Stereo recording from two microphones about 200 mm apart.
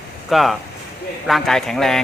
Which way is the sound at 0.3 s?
Centre (ahead or behind).